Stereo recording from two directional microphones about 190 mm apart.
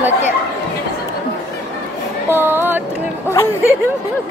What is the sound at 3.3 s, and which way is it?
Speech, 15° left (ahead or behind).